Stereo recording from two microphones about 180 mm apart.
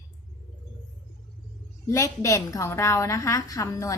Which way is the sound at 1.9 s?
15° left (ahead or behind).